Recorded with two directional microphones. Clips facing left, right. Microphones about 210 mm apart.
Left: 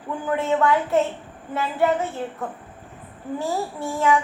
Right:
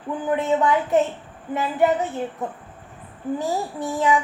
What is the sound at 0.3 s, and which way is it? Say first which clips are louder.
A woman's voice: even; 15° right (ahead or behind).